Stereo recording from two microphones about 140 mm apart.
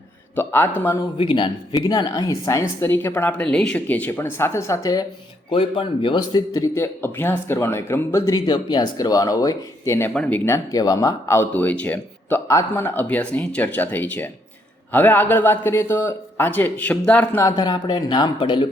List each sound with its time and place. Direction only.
0.3 s speech: 15° left (ahead or behind)
1.2 s speech: 40° left (ahead or behind)
1.7 s speech: 25° left (ahead or behind)
5.5 s a man's voice: 40° left (ahead or behind); by 17.4 s 10° left (ahead or behind)
17.4 s speech: 30° left (ahead or behind)